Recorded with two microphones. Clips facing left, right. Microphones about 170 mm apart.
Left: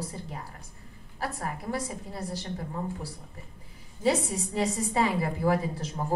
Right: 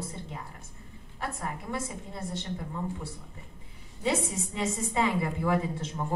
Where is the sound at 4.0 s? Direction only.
35° left (ahead or behind).